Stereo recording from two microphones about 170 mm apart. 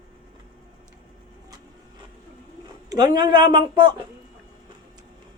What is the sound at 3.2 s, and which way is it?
Speech, 25° right (ahead or behind).